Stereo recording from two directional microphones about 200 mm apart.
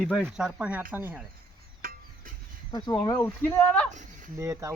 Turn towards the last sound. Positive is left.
turn(degrees=-15)  # may be behind; listen again after turning